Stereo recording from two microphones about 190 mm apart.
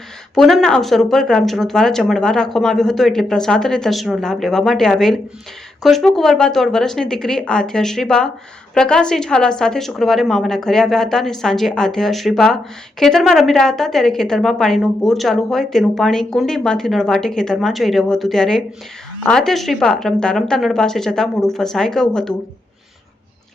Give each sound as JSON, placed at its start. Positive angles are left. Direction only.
{"t": 0.3, "sound": "a woman's voice", "side_deg": 0}